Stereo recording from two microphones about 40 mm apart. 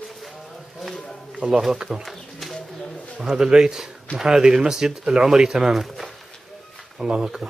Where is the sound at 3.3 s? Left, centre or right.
Centre.